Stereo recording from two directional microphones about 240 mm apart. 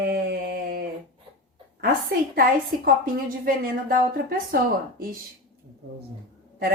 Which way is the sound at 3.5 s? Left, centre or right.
Right.